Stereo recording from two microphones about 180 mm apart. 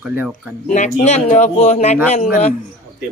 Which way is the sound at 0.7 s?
40° left (ahead or behind).